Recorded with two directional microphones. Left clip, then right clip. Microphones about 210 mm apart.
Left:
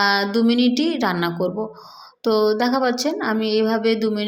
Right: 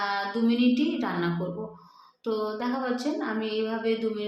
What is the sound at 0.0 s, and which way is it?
Speech, 40° left (ahead or behind).